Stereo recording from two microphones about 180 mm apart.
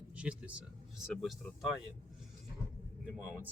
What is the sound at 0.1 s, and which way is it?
A man's voice, 5° right (ahead or behind).